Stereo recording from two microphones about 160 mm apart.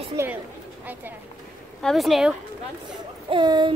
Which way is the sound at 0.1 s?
15° right (ahead or behind).